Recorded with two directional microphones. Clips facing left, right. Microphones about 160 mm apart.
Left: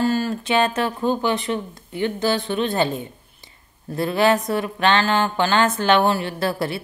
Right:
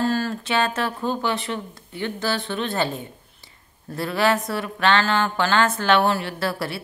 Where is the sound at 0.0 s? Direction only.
10° left (ahead or behind).